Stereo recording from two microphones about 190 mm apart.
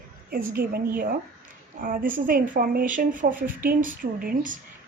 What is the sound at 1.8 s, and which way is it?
A woman's voice, 45° right (ahead or behind).